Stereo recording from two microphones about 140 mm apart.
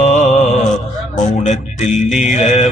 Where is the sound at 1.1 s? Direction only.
60° left (ahead or behind).